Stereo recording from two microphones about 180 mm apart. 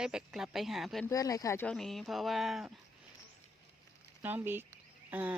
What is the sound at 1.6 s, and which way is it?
Speech, 5° left (ahead or behind).